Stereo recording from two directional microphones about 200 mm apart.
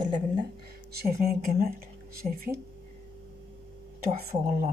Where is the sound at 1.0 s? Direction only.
50° right (ahead or behind).